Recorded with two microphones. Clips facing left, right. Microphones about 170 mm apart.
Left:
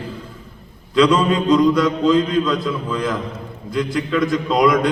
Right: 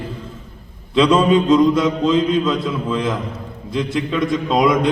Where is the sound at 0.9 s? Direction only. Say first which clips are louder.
Right 2 dB; 25° right (ahead or behind).